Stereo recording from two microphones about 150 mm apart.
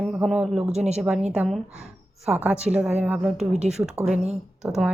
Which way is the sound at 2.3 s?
10° right (ahead or behind).